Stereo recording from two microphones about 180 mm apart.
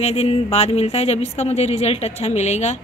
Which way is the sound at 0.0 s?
35° left (ahead or behind).